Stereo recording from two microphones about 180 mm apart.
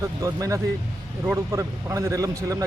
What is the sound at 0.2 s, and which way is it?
A man's voice, 20° right (ahead or behind).